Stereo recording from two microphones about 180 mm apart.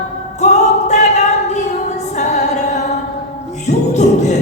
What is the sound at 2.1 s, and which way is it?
Music, 40° left (ahead or behind).